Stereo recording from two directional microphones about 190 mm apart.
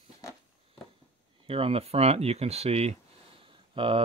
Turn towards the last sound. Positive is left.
turn(degrees=-25)  # may be behind; listen again after turning